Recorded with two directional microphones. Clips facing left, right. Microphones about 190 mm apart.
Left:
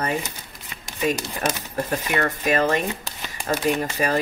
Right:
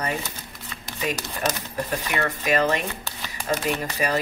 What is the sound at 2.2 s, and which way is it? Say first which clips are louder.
Speech: even; 40° left (ahead or behind).